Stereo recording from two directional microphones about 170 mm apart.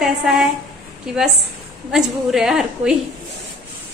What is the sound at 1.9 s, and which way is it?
A woman's voice, 5° right (ahead or behind).